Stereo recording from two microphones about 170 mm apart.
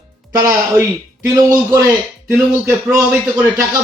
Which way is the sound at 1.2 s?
20° right (ahead or behind).